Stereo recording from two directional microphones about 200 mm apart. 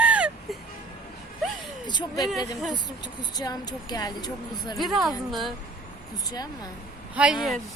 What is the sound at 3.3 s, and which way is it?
A woman's voice, 20° left (ahead or behind).